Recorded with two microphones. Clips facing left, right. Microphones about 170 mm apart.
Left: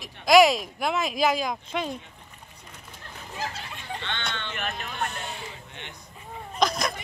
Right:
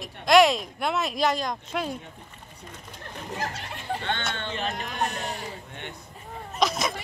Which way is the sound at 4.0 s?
45° right (ahead or behind).